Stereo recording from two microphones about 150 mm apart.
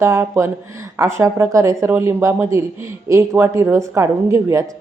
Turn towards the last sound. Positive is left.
turn(degrees=-20)  # may be behind; listen again after turning